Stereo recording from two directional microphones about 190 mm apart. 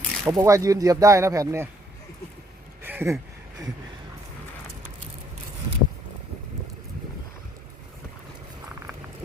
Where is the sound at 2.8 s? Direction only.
10° right (ahead or behind).